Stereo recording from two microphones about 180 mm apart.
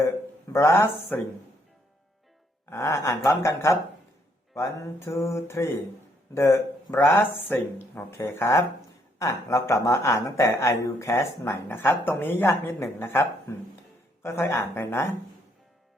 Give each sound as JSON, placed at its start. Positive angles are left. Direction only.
{"t": 0.5, "sound": "speech", "side_deg": 15}
{"t": 2.6, "sound": "speech", "side_deg": 15}